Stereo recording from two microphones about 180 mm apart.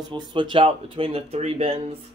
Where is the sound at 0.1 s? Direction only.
25° right (ahead or behind).